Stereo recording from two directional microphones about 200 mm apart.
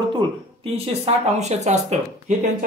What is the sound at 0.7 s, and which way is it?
Speech, 30° right (ahead or behind).